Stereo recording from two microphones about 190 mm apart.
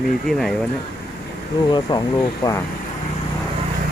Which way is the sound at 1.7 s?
25° left (ahead or behind).